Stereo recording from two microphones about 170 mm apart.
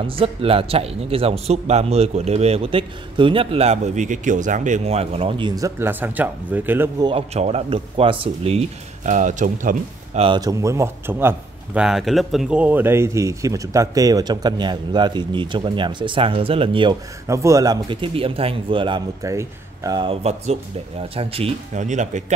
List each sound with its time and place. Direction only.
0.0 s a man's voice: 35° right (ahead or behind)
5.6 s speech: 15° right (ahead or behind)
7.1 s a man's voice: 35° right (ahead or behind)
10.2 s a man's voice: 25° right (ahead or behind)
17.3 s a man's voice: 15° right (ahead or behind); by 22.2 s 45° right (ahead or behind)